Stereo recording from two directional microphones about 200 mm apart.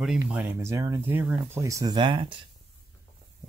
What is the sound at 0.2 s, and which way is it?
Speech, 10° right (ahead or behind).